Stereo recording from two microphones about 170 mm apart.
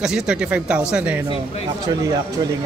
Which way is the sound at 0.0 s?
5° right (ahead or behind).